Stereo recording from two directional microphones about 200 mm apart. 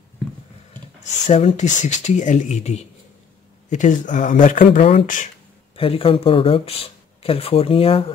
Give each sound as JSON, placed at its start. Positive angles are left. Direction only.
{"t": 1.0, "sound": "speech", "side_deg": 35}
{"t": 5.8, "sound": "speech", "side_deg": 30}